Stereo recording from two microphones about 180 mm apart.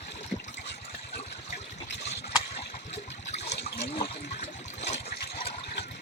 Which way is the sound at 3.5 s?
70° left (ahead or behind).